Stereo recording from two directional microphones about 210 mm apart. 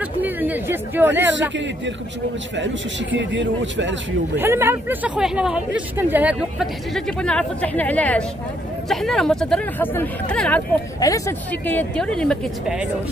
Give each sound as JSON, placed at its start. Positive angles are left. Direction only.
{"t": 0.2, "sound": "speech", "side_deg": -10}
{"t": 3.2, "sound": "a man's voice", "side_deg": -60}
{"t": 4.4, "sound": "speech", "side_deg": -10}
{"t": 11.0, "sound": "speech", "side_deg": 15}